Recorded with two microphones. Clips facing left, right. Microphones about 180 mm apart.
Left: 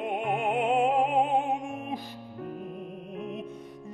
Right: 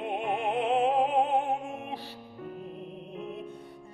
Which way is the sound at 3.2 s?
15° left (ahead or behind).